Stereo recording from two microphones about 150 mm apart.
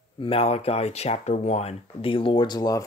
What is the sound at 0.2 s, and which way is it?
Speech, 40° left (ahead or behind).